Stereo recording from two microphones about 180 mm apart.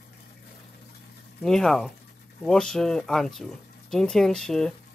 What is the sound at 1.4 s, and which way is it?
Speech, centre (ahead or behind).